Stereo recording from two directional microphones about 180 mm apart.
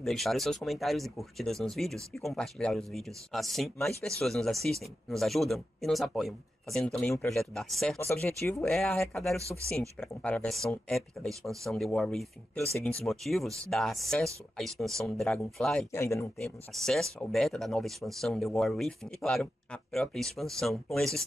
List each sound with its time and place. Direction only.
0.0 s speech: centre (ahead or behind)
8.5 s speech: centre (ahead or behind)
15.9 s speech: 15° left (ahead or behind)
16.3 s speech: centre (ahead or behind)